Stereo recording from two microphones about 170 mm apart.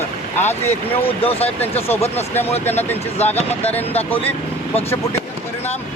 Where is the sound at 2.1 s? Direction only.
10° left (ahead or behind).